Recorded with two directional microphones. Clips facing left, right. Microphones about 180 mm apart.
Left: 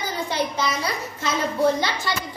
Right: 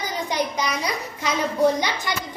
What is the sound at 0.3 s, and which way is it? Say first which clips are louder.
Speech: even; 15° right (ahead or behind).